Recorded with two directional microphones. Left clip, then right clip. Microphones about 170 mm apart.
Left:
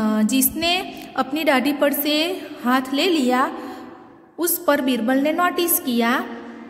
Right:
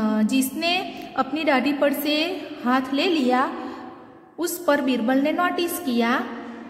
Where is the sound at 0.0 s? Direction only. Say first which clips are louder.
Left 2 dB; 20° left (ahead or behind).